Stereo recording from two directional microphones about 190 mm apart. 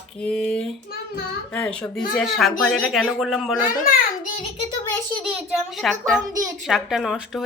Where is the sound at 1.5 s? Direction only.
5° left (ahead or behind).